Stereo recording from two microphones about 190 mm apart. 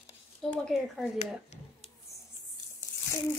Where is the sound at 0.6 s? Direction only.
Centre (ahead or behind).